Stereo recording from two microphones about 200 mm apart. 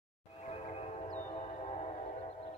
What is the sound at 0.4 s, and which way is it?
Music, 30° left (ahead or behind).